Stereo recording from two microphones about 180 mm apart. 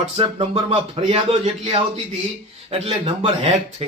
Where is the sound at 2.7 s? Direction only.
30° right (ahead or behind).